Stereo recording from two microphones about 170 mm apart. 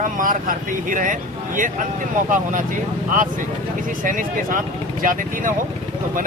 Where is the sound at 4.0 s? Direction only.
50° right (ahead or behind).